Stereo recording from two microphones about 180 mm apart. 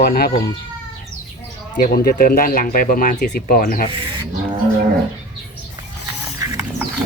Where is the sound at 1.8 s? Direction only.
50° left (ahead or behind).